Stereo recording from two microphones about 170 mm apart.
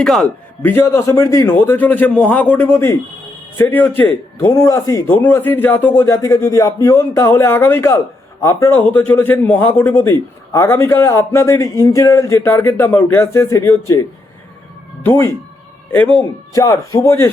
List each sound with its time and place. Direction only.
0.0 s a man's voice: 5° left (ahead or behind)
15.0 s a man's voice: 15° left (ahead or behind)